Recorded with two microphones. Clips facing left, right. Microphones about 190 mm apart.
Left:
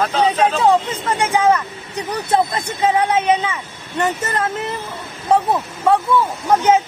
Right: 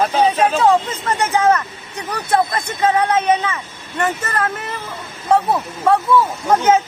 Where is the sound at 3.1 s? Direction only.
10° left (ahead or behind).